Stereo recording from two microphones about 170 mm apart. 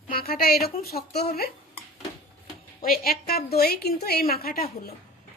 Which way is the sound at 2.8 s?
60° left (ahead or behind).